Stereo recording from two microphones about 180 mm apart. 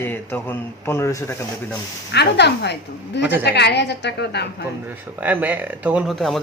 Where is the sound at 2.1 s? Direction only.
70° left (ahead or behind).